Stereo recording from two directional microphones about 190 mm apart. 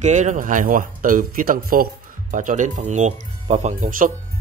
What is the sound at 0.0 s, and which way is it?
Speech, 40° right (ahead or behind).